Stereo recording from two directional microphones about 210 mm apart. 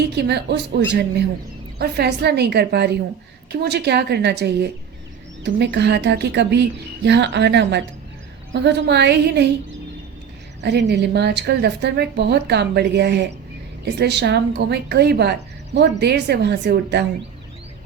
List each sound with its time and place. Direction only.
0.2 s a woman's voice: 55° right (ahead or behind)
1.8 s a woman's voice: 50° right (ahead or behind)
10.6 s a woman's voice: 55° right (ahead or behind)